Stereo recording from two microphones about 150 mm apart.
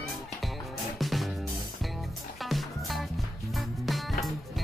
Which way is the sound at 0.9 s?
Centre (ahead or behind).